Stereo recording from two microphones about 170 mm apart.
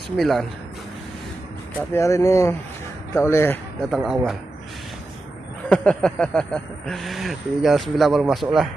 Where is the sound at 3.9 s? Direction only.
5° right (ahead or behind).